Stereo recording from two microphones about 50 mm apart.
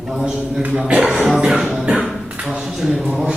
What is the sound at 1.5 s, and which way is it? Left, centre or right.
Music, centre.